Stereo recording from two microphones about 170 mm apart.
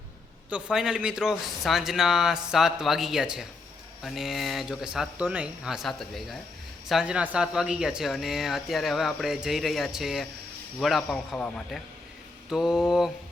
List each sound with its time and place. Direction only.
0.5 s speech: 5° right (ahead or behind)